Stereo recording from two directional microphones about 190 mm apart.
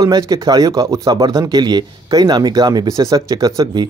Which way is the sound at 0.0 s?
20° right (ahead or behind).